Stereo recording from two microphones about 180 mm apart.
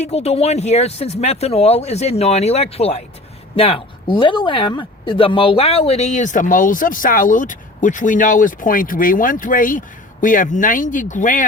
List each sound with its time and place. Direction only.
0.0 s speech: 35° left (ahead or behind)